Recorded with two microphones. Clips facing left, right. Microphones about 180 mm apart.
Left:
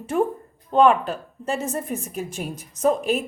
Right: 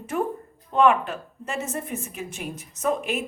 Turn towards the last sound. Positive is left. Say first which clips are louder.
# left 5 dB
turn(degrees=35)  # may be behind; listen again after turning